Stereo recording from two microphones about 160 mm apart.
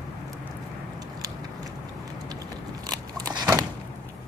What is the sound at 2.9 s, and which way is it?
Biting, 25° right (ahead or behind).